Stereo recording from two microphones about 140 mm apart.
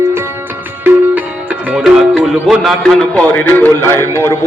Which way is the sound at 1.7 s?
Centre (ahead or behind).